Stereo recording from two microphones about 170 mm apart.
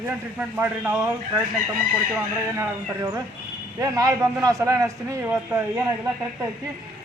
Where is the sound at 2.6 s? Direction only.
15° right (ahead or behind).